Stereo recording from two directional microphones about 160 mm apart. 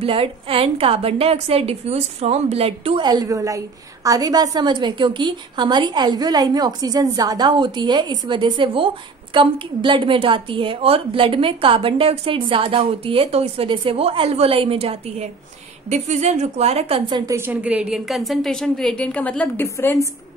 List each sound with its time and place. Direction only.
0.0 s a woman's voice: 35° right (ahead or behind)
3.1 s a woman's voice: 25° right (ahead or behind); by 17.0 s 40° right (ahead or behind)
17.1 s a woman's voice: 15° right (ahead or behind); by 20.1 s 15° left (ahead or behind)